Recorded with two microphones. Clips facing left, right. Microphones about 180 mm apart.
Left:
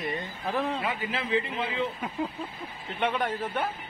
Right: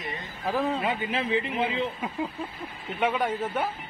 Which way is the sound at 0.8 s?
25° right (ahead or behind).